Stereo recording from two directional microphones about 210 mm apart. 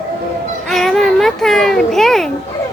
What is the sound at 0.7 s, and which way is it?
A child's voice, centre (ahead or behind).